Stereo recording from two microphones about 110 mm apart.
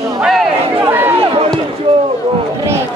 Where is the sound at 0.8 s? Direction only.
20° right (ahead or behind).